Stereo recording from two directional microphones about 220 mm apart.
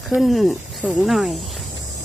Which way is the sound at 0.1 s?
Centre (ahead or behind).